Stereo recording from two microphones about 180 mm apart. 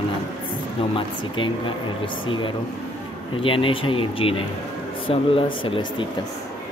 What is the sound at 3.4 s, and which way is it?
Speech, 30° left (ahead or behind).